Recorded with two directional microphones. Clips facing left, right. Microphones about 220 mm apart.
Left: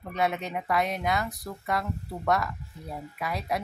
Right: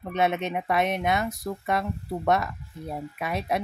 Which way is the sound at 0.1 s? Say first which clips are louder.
Right 3 dB; 20° right (ahead or behind).